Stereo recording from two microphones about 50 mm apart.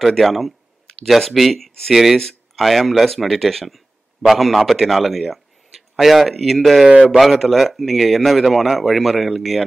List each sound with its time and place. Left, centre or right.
0.0 s speech: centre